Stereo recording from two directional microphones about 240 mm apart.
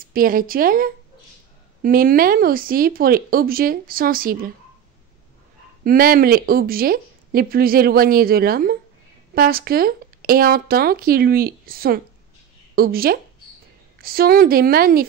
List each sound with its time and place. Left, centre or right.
0.1 s speech: right
5.9 s speech: right